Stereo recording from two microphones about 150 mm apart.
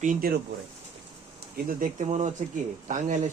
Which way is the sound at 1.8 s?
55° right (ahead or behind).